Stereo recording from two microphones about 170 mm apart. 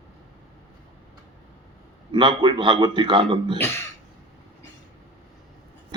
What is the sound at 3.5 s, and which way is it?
Speech, 15° left (ahead or behind).